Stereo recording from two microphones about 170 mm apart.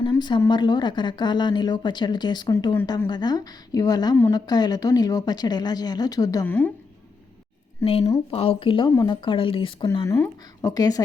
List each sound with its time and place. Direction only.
0.0 s speech: 25° left (ahead or behind)
7.8 s speech: 20° left (ahead or behind)
8.3 s speech: 35° left (ahead or behind)